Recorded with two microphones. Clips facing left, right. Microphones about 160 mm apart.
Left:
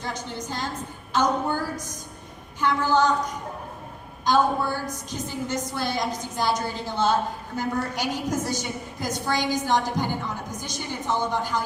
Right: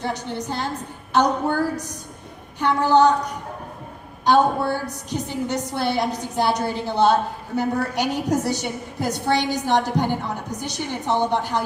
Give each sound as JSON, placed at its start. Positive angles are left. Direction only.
{"t": 0.0, "sound": "a woman's voice", "side_deg": -65}
{"t": 4.3, "sound": "a woman's voice", "side_deg": -65}